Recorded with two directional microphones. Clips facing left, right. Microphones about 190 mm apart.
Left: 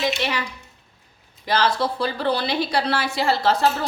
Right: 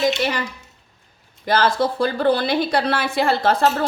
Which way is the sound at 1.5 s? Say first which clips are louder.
Right 3 dB; 50° right (ahead or behind).